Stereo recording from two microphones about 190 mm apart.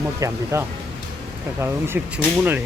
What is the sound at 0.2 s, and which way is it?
Speech, 15° right (ahead or behind).